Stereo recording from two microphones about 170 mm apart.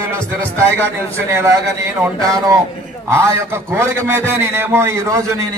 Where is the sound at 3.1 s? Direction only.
15° right (ahead or behind).